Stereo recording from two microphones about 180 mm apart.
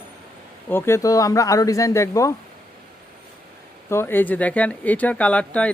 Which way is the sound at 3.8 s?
15° left (ahead or behind).